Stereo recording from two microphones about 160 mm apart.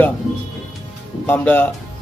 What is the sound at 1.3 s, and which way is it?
Speech, 10° left (ahead or behind).